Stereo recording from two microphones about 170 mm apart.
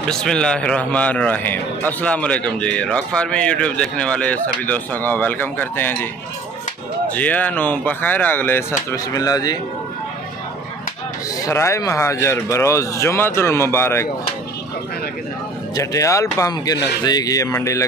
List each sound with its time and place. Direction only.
0.1 s a man's voice: 5° left (ahead or behind)
7.2 s a man's voice: 10° left (ahead or behind)
11.4 s a man's voice: 15° left (ahead or behind)
15.7 s speech: 20° left (ahead or behind)